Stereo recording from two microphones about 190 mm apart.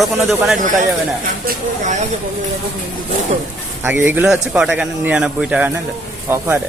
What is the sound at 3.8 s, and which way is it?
A man's voice, 10° right (ahead or behind).